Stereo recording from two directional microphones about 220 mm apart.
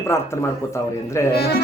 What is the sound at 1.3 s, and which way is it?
Speech, 45° left (ahead or behind).